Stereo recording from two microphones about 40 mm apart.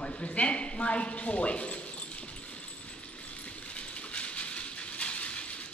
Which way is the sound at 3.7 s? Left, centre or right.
Left.